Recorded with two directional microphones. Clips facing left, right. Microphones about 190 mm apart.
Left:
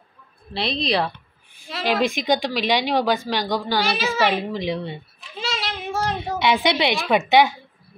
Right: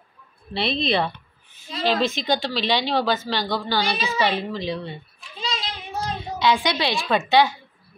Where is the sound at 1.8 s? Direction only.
15° left (ahead or behind).